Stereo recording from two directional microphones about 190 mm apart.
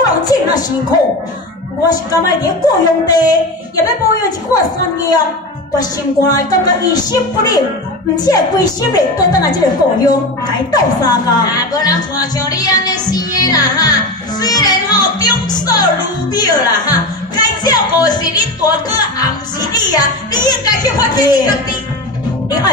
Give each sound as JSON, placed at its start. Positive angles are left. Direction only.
{"t": 0.0, "sound": "music", "side_deg": 20}
{"t": 1.9, "sound": "a woman's voice", "side_deg": 20}